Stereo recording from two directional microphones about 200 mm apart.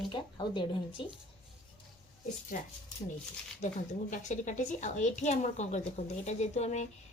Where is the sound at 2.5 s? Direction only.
40° left (ahead or behind).